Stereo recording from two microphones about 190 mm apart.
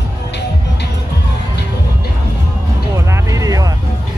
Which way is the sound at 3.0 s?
15° right (ahead or behind).